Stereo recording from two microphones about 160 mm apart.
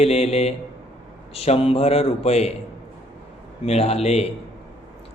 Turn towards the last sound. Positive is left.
turn(degrees=40)  # may be behind; listen again after turning